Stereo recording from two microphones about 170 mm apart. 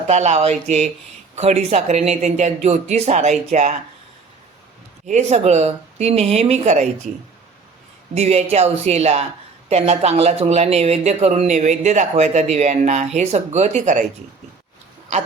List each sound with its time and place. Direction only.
0.1 s speech: 40° right (ahead or behind)
5.0 s speech: 45° right (ahead or behind)
8.1 s speech: 40° right (ahead or behind)